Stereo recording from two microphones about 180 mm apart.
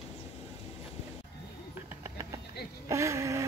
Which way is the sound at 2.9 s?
15° right (ahead or behind).